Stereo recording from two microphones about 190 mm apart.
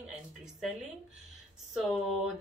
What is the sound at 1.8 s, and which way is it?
Speech, centre (ahead or behind).